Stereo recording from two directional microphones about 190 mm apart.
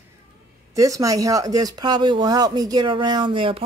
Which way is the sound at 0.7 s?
15° right (ahead or behind).